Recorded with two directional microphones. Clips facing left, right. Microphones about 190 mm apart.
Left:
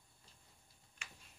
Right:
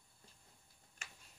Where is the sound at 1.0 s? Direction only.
45° right (ahead or behind).